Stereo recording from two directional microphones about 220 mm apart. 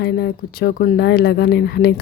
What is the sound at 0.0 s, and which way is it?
Speech, 45° left (ahead or behind).